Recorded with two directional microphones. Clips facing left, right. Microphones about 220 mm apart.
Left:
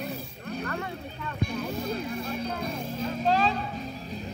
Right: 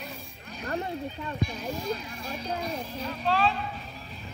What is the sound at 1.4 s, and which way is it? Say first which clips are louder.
Music: left 2 dB; 60° left (ahead or behind).